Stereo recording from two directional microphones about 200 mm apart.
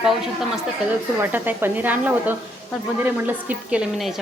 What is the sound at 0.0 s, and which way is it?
A woman's voice, centre (ahead or behind).